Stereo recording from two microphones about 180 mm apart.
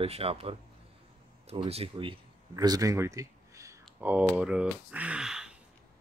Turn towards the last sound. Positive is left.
turn(degrees=-5)  # may be behind; listen again after turning